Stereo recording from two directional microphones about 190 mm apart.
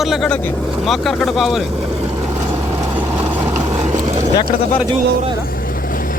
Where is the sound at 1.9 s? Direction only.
15° right (ahead or behind).